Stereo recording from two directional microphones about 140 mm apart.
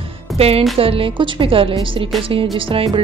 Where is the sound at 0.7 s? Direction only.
40° right (ahead or behind).